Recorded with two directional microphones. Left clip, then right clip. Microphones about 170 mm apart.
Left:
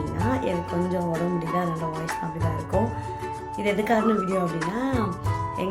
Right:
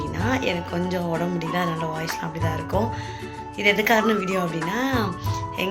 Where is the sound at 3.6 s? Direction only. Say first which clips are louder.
Right 4 dB; 5° left (ahead or behind).